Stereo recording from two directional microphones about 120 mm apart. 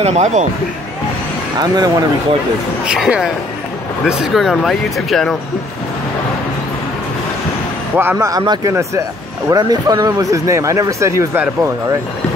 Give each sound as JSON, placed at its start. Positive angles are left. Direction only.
{"t": 0.0, "sound": "speech", "side_deg": -70}
{"t": 1.6, "sound": "speech", "side_deg": -30}
{"t": 2.8, "sound": "speech", "side_deg": -5}
{"t": 7.9, "sound": "speech", "side_deg": -15}
{"t": 8.2, "sound": "speech", "side_deg": -30}